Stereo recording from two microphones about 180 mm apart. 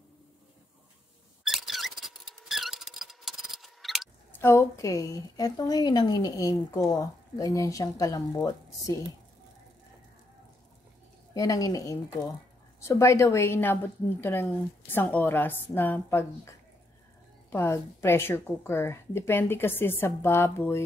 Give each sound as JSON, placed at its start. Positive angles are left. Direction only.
{"t": 1.4, "sound": "a sound", "side_deg": 0}
{"t": 4.4, "sound": "a woman's voice", "side_deg": 15}
{"t": 11.3, "sound": "a woman's voice", "side_deg": 20}
{"t": 17.5, "sound": "a woman's voice", "side_deg": 15}